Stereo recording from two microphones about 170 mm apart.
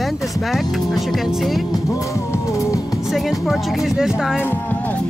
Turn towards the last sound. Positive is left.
turn(degrees=10)  # may be behind; listen again after turning